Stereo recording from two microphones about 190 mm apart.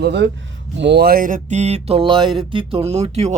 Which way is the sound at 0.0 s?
65° right (ahead or behind).